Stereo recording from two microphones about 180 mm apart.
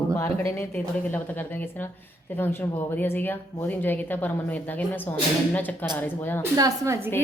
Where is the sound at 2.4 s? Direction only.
10° left (ahead or behind).